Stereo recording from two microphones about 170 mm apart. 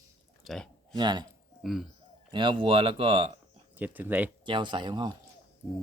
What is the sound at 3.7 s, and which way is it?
Speech, 10° right (ahead or behind).